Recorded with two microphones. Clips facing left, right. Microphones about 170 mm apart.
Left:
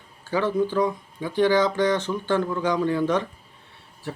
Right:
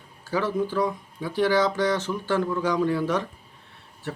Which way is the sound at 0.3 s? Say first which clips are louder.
Left 2 dB; 5° right (ahead or behind).